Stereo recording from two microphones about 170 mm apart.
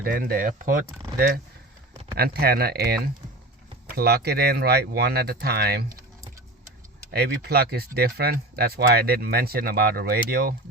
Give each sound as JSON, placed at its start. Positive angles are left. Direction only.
{"t": 0.0, "sound": "speech", "side_deg": -60}
{"t": 2.1, "sound": "speech", "side_deg": -65}
{"t": 7.1, "sound": "speech", "side_deg": -65}